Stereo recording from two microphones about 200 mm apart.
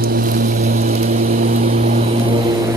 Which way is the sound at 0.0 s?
45° right (ahead or behind).